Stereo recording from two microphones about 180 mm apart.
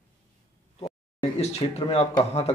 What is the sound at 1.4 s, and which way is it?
Speech, 35° left (ahead or behind).